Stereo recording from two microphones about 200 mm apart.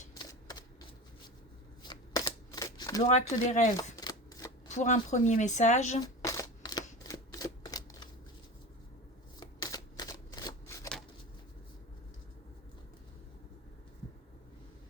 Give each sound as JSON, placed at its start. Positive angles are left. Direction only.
{"t": 0.1, "sound": "a sound", "side_deg": 20}
{"t": 1.8, "sound": "shuffling cards", "side_deg": 20}
{"t": 3.1, "sound": "speech", "side_deg": 35}
{"t": 3.9, "sound": "shuffling cards", "side_deg": 15}
{"t": 4.7, "sound": "speech", "side_deg": 35}
{"t": 6.0, "sound": "a sound", "side_deg": 20}
{"t": 9.4, "sound": "shuffling cards", "side_deg": 20}